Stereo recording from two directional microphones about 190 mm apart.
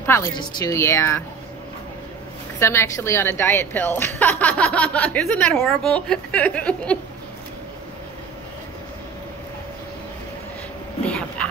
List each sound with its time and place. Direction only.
0.0 s a woman's voice: 10° left (ahead or behind)
2.6 s a woman's voice: 15° left (ahead or behind)
11.1 s a sound: 5° left (ahead or behind)